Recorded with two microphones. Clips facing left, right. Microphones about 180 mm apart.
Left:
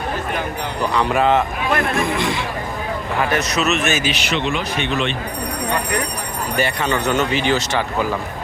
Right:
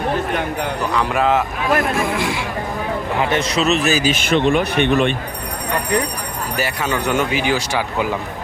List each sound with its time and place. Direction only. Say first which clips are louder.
0.9 s speech: left 1 dB; centre (ahead or behind)
3.2 s a man's voice: right 1 dB; 25° right (ahead or behind)
4.1 s speech: right 6 dB; 50° right (ahead or behind)
6.6 s speech: left 2 dB; 5° right (ahead or behind)